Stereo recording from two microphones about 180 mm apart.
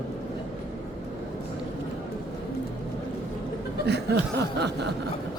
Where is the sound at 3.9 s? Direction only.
70° right (ahead or behind).